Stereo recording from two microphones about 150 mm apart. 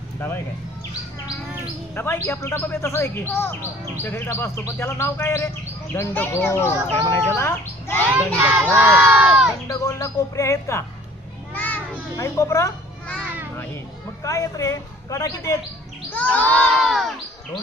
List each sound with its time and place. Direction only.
2.0 s speech: 15° left (ahead or behind)
8.1 s speech: 10° right (ahead or behind)
9.6 s speech: 20° left (ahead or behind)
11.5 s children playing: 10° left (ahead or behind)
12.1 s speech: 20° left (ahead or behind)
14.3 s speech: 20° left (ahead or behind)
16.0 s bird: 10° left (ahead or behind)
16.6 s a sound: centre (ahead or behind)